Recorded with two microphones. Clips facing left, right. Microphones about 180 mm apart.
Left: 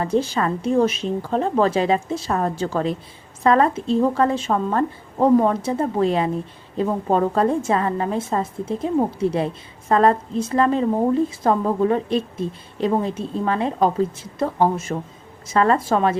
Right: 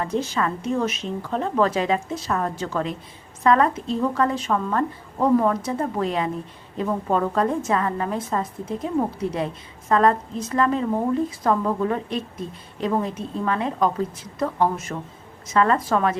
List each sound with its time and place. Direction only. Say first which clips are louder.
0.0 s a woman's voice: left 3 dB; 30° left (ahead or behind)